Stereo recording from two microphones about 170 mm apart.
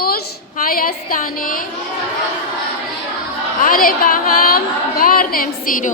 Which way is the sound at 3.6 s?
55° left (ahead or behind).